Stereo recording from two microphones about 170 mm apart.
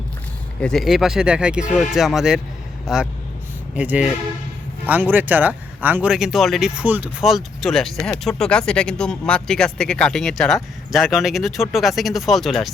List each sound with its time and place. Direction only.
0.6 s speech: centre (ahead or behind)